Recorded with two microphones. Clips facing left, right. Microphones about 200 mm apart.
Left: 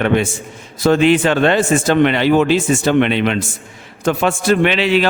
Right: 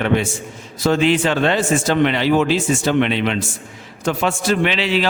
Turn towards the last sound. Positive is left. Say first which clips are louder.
# left 4 dB
turn(degrees=55)  # may be behind; listen again after turning